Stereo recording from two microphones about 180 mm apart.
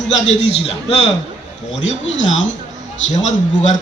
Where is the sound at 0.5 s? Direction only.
35° left (ahead or behind).